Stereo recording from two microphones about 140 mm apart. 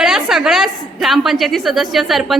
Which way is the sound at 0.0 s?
5° right (ahead or behind).